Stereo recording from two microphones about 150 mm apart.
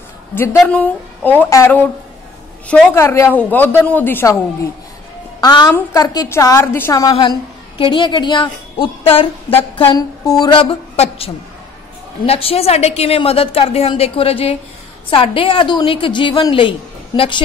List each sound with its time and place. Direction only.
0.3 s a woman's voice: 15° left (ahead or behind)
2.9 s a woman's voice: 15° left (ahead or behind)
5.4 s a woman's voice: 30° left (ahead or behind)
9.8 s a woman's voice: 25° left (ahead or behind)